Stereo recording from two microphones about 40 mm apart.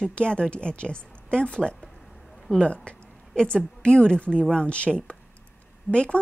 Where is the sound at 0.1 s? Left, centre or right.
Left.